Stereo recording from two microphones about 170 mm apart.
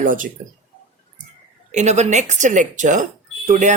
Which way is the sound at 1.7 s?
40° right (ahead or behind).